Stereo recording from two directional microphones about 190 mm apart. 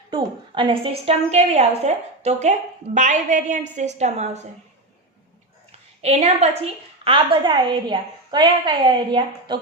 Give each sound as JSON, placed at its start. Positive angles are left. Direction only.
{"t": 0.1, "sound": "a woman's voice", "side_deg": -25}
{"t": 6.0, "sound": "a woman's voice", "side_deg": -35}